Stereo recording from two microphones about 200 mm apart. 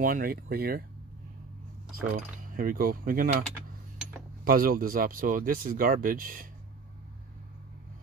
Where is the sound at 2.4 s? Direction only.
45° right (ahead or behind).